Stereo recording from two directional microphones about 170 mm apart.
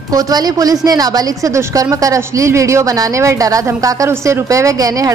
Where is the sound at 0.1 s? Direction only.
20° right (ahead or behind).